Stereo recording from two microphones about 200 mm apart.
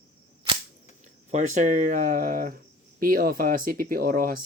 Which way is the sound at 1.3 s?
35° right (ahead or behind).